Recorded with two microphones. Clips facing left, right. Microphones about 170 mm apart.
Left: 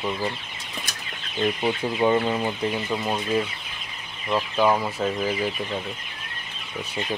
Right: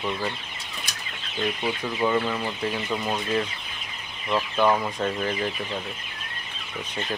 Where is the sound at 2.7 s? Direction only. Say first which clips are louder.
Left 1 dB; 10° left (ahead or behind).